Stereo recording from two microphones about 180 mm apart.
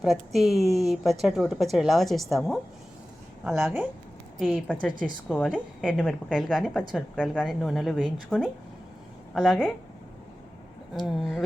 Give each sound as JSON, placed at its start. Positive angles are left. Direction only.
{"t": 0.3, "sound": "a woman's voice", "side_deg": 0}
{"t": 10.9, "sound": "a woman's voice", "side_deg": 0}